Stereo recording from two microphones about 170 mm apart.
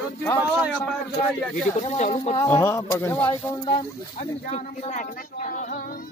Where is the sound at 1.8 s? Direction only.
40° left (ahead or behind).